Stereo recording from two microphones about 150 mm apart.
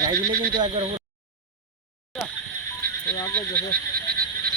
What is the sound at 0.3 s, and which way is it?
Speech, 80° right.